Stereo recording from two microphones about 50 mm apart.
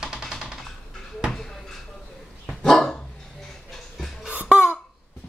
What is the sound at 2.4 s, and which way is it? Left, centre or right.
Dog, centre.